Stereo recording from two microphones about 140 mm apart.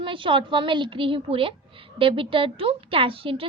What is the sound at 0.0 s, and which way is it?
A woman's voice, 35° right (ahead or behind).